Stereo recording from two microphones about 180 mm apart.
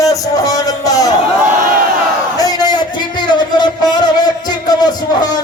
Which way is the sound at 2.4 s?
20° left (ahead or behind).